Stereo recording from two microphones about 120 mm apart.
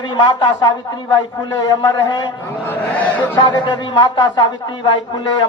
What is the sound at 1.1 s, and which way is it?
Speech, 35° left (ahead or behind).